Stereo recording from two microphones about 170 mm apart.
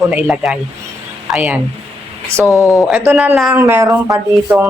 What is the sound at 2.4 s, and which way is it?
Speech, 20° left (ahead or behind).